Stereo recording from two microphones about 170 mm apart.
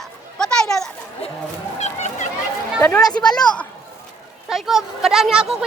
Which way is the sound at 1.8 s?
45° left (ahead or behind).